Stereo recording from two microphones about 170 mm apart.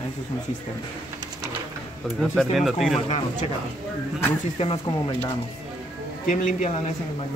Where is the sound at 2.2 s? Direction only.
Centre (ahead or behind).